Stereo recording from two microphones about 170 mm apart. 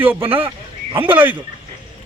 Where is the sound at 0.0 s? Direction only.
10° right (ahead or behind).